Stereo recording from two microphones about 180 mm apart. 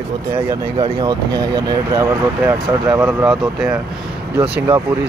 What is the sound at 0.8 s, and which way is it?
Speech, 20° right (ahead or behind).